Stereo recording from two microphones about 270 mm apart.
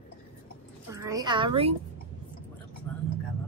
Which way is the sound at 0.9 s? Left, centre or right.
Centre.